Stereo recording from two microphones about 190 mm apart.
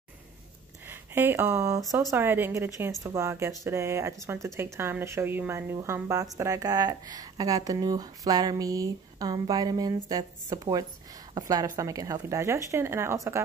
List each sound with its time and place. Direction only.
0.8 s speech: 10° right (ahead or behind)